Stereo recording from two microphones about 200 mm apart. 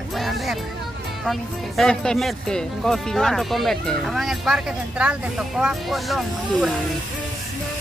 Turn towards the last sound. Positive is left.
turn(degrees=0)  # may be behind; listen again after turning